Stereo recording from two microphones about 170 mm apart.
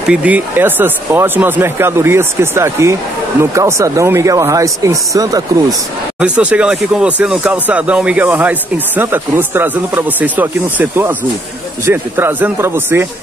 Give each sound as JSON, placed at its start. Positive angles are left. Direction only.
{"t": 0.1, "sound": "speech", "side_deg": -10}
{"t": 6.1, "sound": "speech", "side_deg": -5}